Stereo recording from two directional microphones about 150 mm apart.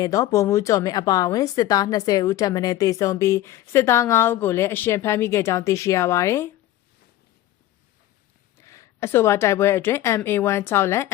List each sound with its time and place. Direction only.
0.0 s a woman's voice: 20° left (ahead or behind)
8.5 s a woman's voice: 20° left (ahead or behind)